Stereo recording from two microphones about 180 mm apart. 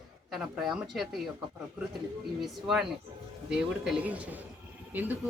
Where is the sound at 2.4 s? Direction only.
Centre (ahead or behind).